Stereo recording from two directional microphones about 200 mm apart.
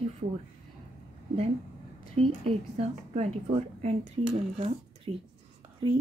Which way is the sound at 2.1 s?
30° right (ahead or behind).